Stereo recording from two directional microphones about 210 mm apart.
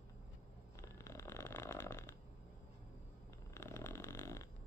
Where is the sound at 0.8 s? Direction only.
15° left (ahead or behind).